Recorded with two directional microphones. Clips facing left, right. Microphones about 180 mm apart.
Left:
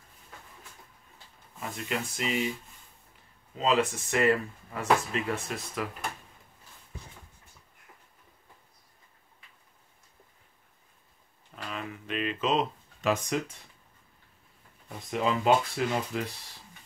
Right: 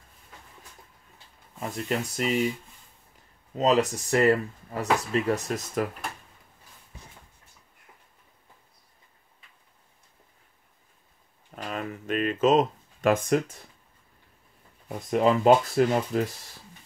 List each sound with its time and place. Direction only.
1.9 s speech: 40° right (ahead or behind)
3.5 s speech: 40° right (ahead or behind)
11.5 s a sound: 45° right (ahead or behind)
14.9 s speech: 45° right (ahead or behind)